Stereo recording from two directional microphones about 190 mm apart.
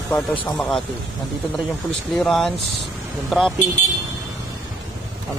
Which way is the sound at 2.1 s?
Centre (ahead or behind).